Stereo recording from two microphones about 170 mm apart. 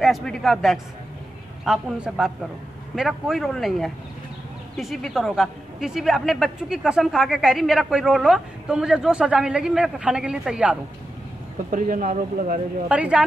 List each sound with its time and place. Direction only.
0.0 s a man's voice: centre (ahead or behind)
11.7 s speech: 55° right (ahead or behind)
12.8 s speech: 5° right (ahead or behind)